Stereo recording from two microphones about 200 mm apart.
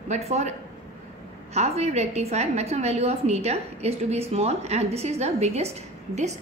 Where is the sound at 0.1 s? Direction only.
35° right (ahead or behind).